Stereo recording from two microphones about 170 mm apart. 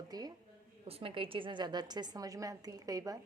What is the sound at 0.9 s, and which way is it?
A woman's voice, 35° right (ahead or behind).